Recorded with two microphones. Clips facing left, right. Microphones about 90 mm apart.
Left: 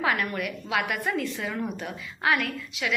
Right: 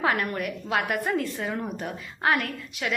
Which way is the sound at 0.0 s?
35° right (ahead or behind).